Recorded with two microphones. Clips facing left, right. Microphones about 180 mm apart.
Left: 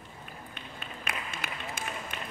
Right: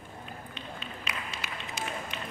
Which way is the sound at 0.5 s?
50° left (ahead or behind).